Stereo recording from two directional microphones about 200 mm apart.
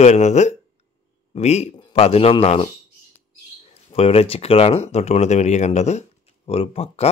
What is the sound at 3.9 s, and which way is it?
Speech, 30° left (ahead or behind).